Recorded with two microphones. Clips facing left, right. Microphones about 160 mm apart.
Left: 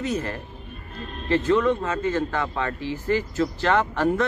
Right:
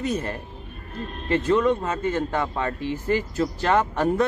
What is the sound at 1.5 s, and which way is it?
Speech, 15° right (ahead or behind).